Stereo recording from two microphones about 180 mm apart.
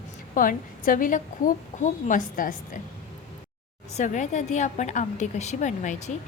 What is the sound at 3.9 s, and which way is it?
A woman's voice, 45° left (ahead or behind).